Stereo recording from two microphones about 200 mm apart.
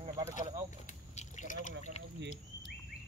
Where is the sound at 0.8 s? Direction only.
35° left (ahead or behind).